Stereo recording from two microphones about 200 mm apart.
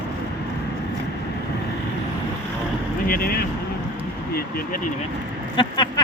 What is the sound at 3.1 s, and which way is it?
Speech, 45° left (ahead or behind).